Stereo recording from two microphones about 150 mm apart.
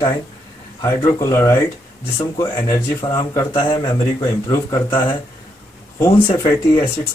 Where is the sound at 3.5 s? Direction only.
35° left (ahead or behind).